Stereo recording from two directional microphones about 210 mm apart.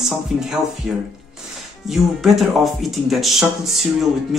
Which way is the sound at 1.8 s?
Centre (ahead or behind).